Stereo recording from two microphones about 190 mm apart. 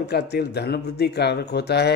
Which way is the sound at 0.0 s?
60° left (ahead or behind).